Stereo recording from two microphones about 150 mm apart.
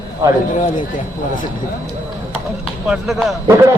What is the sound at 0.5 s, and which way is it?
Speech, 60° left (ahead or behind).